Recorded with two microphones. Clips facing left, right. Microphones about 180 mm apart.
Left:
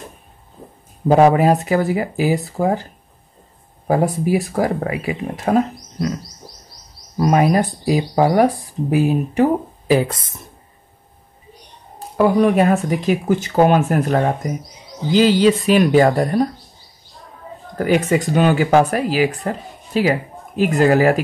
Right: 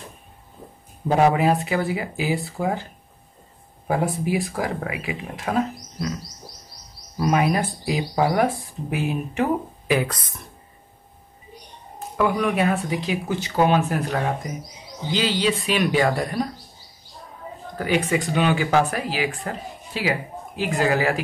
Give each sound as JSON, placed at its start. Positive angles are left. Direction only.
{"t": 1.0, "sound": "speech", "side_deg": 45}
{"t": 7.2, "sound": "speech", "side_deg": 40}
{"t": 12.2, "sound": "speech", "side_deg": 35}
{"t": 17.7, "sound": "speech", "side_deg": 45}